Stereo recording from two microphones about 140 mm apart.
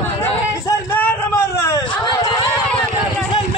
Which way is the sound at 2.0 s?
30° left (ahead or behind).